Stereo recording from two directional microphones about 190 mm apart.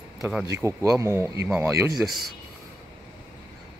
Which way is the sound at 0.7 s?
15° right (ahead or behind).